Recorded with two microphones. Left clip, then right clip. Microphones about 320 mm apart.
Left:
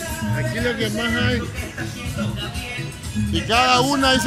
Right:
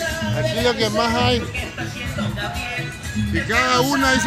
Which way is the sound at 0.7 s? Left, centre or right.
Right.